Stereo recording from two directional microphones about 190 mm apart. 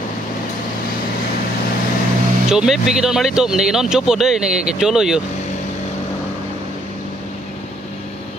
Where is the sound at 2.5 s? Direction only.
5° right (ahead or behind).